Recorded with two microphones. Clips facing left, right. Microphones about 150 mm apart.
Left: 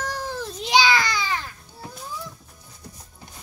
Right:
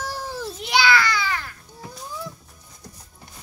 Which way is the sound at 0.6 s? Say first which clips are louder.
Even; 20° left (ahead or behind).